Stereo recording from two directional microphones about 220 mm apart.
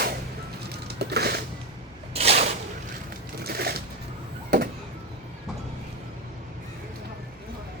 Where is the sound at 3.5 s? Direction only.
45° right (ahead or behind).